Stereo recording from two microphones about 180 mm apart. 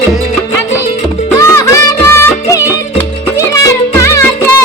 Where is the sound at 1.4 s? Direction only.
15° left (ahead or behind).